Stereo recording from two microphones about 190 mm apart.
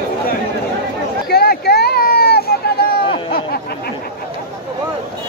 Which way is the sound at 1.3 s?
55° left (ahead or behind).